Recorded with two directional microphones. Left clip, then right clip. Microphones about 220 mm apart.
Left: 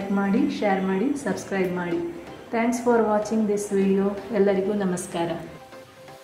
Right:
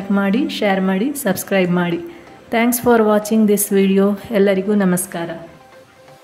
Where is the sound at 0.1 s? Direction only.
45° right (ahead or behind).